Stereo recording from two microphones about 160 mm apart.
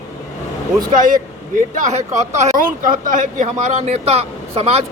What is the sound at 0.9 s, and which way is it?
A man's voice, 55° right (ahead or behind).